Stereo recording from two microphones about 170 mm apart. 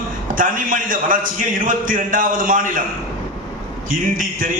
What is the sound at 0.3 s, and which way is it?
A man's voice, 55° right (ahead or behind).